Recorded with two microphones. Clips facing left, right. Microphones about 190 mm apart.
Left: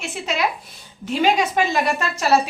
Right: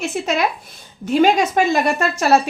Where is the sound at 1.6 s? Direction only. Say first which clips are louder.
Right 4 dB; 45° right (ahead or behind).